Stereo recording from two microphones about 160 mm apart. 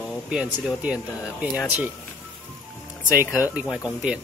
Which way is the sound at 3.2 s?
20° left (ahead or behind).